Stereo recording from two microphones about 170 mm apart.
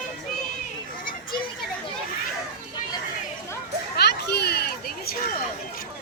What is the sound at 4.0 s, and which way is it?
Children playing, 75° left (ahead or behind).